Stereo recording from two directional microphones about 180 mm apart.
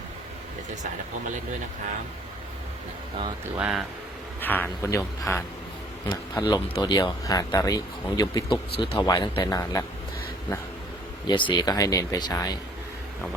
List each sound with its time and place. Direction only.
3.6 s speech: 5° right (ahead or behind)
4.4 s a man's voice: 10° left (ahead or behind)
11.3 s speech: 25° left (ahead or behind)